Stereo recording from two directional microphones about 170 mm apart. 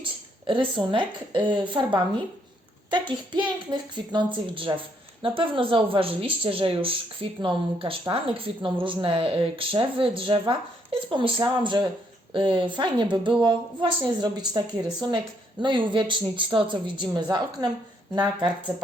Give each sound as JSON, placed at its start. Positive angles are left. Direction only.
{"t": 0.0, "sound": "speech", "side_deg": -30}
{"t": 15.6, "sound": "speech", "side_deg": -30}